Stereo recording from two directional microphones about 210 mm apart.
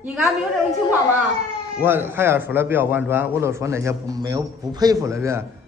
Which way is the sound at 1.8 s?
10° right (ahead or behind).